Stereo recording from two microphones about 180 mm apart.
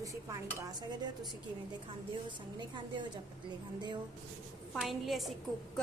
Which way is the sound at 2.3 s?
25° right (ahead or behind).